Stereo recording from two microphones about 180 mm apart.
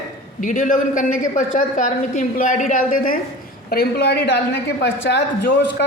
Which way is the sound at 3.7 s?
60° left (ahead or behind).